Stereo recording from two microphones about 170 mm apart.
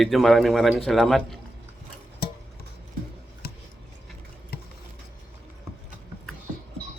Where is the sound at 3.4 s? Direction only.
65° left (ahead or behind).